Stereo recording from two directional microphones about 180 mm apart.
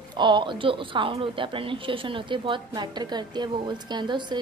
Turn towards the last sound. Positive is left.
turn(degrees=-25)  # may be behind; listen again after turning